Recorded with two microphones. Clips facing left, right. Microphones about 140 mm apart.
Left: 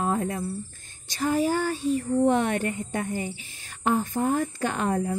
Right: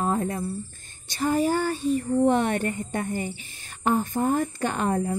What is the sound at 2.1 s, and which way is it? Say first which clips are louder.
Speech: right 1 dB; centre (ahead or behind).